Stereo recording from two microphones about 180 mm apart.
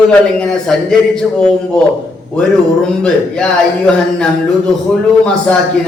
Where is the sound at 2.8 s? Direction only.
5° left (ahead or behind).